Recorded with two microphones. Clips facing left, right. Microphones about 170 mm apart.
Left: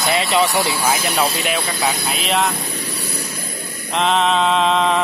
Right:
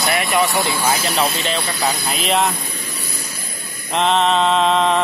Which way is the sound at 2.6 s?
70° left (ahead or behind).